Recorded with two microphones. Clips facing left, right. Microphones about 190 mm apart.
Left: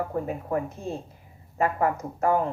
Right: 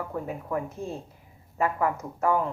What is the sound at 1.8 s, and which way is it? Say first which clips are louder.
Speech: left 2 dB; 45° left (ahead or behind).